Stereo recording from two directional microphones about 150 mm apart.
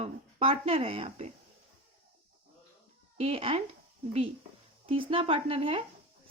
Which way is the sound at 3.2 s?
40° right (ahead or behind).